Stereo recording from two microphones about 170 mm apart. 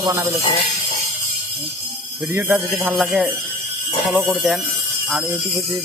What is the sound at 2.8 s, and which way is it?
Speech, centre (ahead or behind).